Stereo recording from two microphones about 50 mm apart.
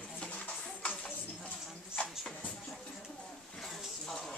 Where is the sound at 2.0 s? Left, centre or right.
Left.